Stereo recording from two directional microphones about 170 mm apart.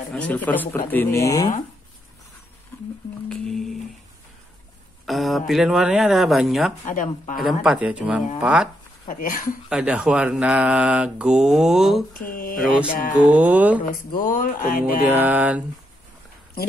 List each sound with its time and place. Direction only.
0.1 s speech: 10° left (ahead or behind)
3.3 s speech: 5° left (ahead or behind)
5.0 s speech: centre (ahead or behind)
6.9 s a sound: 50° left (ahead or behind)
7.4 s speech: 5° right (ahead or behind)
9.0 s a sound: 50° left (ahead or behind)
9.7 s speech: 5° right (ahead or behind)
12.1 s mantra: 55° left (ahead or behind)
13.3 s speech: 10° right (ahead or behind)
14.2 s a sound: 50° left (ahead or behind)
15.1 s speech: 10° right (ahead or behind)